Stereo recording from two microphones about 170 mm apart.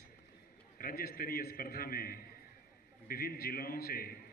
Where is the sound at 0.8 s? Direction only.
60° left (ahead or behind).